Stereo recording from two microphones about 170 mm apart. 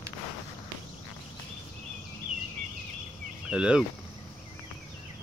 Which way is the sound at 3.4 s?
5° right (ahead or behind).